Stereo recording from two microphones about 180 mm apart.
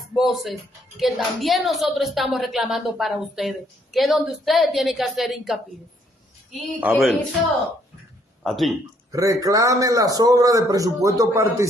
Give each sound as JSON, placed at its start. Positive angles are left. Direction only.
{"t": 0.1, "sound": "a woman's voice", "side_deg": 0}
{"t": 8.5, "sound": "a woman's voice", "side_deg": 0}
{"t": 9.1, "sound": "a man's voice", "side_deg": -20}